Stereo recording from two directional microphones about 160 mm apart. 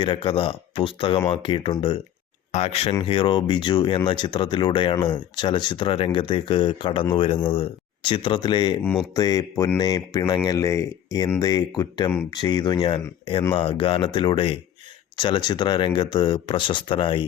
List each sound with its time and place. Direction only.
0.0 s speech: 30° left (ahead or behind)